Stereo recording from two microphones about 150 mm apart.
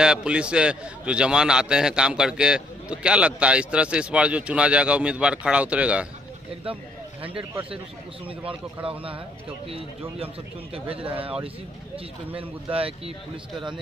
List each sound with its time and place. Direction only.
0.0 s a man's voice: 5° right (ahead or behind)
6.6 s a sound: 35° right (ahead or behind)
8.3 s speech: 35° right (ahead or behind)
12.4 s speech: 40° right (ahead or behind)